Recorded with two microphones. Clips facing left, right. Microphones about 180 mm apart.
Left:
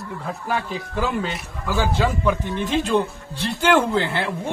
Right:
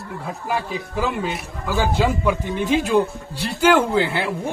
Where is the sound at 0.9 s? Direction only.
5° right (ahead or behind).